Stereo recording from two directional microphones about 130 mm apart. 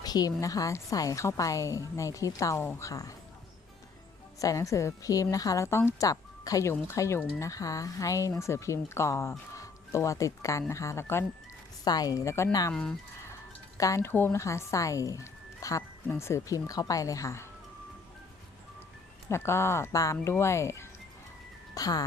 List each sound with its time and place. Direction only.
0.0 s a woman's voice: 30° left (ahead or behind)
4.4 s a woman's voice: 25° left (ahead or behind)
13.7 s a woman's voice: 25° left (ahead or behind)
19.3 s a woman's voice: 20° left (ahead or behind)